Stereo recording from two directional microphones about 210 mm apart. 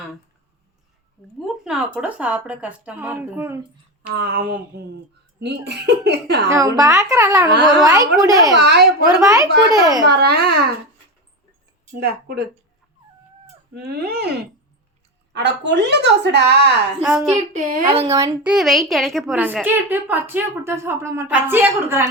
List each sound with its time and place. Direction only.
1.6 s a woman's voice: 5° right (ahead or behind)
4.1 s speech: 50° right (ahead or behind)
6.5 s a woman's voice: 15° right (ahead or behind)
8.5 s speech: 50° right (ahead or behind)
9.2 s a woman's voice: 15° right (ahead or behind)
10.1 s speech: 50° right (ahead or behind)
12.0 s speech: 50° right (ahead or behind)
13.7 s speech: 45° right (ahead or behind)
17.0 s a woman's voice: 5° right (ahead or behind)
17.5 s a woman's voice: 35° right (ahead or behind)
18.1 s a woman's voice: 15° right (ahead or behind)
18.5 s a woman's voice: centre (ahead or behind)